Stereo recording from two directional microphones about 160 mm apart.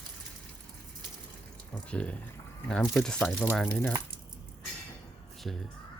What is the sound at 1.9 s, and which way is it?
Speech, 5° left (ahead or behind).